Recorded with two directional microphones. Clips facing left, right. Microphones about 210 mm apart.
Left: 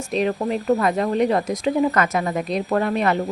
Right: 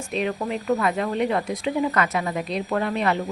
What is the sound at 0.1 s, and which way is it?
A woman's voice, 35° left (ahead or behind).